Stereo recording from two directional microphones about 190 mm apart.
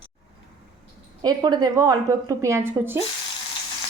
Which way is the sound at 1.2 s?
20° right (ahead or behind).